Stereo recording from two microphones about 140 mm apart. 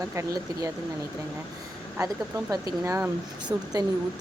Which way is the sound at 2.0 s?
25° right (ahead or behind).